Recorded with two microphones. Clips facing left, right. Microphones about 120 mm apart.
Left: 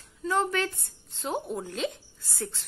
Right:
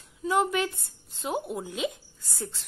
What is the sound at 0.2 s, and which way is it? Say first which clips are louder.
A woman's voice: right 2 dB; 10° right (ahead or behind).